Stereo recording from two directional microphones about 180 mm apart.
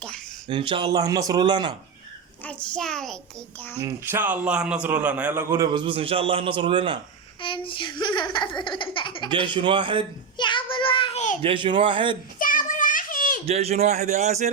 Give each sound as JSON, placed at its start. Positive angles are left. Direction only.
{"t": 0.4, "sound": "speech", "side_deg": -25}
{"t": 2.4, "sound": "a child's voice", "side_deg": 5}
{"t": 3.8, "sound": "a man's voice", "side_deg": -15}
{"t": 5.7, "sound": "speech", "side_deg": -30}
{"t": 7.4, "sound": "a child's voice", "side_deg": 30}
{"t": 9.3, "sound": "speech", "side_deg": -25}
{"t": 10.3, "sound": "child singing", "side_deg": 25}
{"t": 11.4, "sound": "speech", "side_deg": -30}
{"t": 12.4, "sound": "children playing", "side_deg": 50}
{"t": 13.4, "sound": "speech", "side_deg": -35}